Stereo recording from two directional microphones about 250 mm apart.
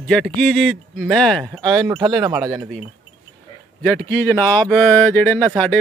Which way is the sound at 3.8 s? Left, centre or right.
Centre.